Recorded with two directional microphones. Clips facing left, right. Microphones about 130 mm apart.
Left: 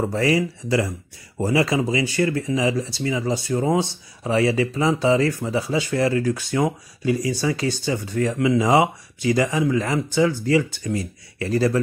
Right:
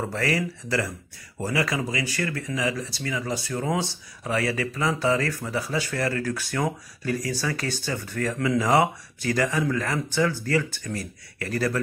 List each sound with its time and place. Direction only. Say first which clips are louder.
0.0 s speech: left 6 dB; 20° left (ahead or behind)